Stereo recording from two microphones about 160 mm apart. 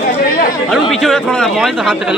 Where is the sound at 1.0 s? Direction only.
Centre (ahead or behind).